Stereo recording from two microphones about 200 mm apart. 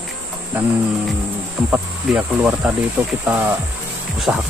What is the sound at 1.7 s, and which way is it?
Speech, 5° right (ahead or behind).